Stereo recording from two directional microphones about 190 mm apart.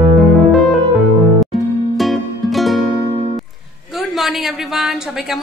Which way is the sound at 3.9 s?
Centre (ahead or behind).